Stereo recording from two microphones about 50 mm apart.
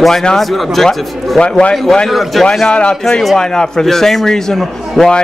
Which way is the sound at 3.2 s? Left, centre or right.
Centre.